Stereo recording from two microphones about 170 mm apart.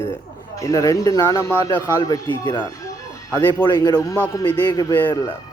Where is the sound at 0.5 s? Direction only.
20° left (ahead or behind).